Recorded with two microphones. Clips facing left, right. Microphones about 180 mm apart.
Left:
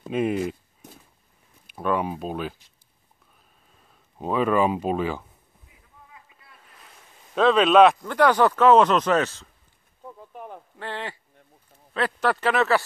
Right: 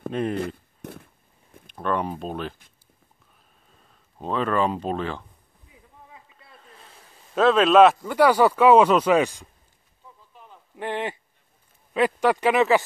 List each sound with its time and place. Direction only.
0.1 s speech: 5° left (ahead or behind)
1.7 s speech: 5° left (ahead or behind)
4.2 s speech: 10° left (ahead or behind)
7.3 s speech: centre (ahead or behind)
10.0 s a sound: 60° left (ahead or behind)
10.8 s speech: 20° right (ahead or behind)